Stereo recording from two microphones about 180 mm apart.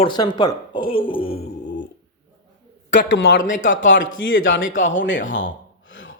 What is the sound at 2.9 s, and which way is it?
A man's voice, 85° left.